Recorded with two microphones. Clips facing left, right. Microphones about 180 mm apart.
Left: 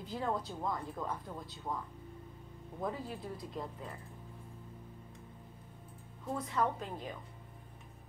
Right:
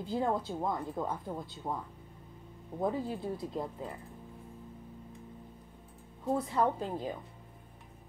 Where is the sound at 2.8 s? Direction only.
25° right (ahead or behind).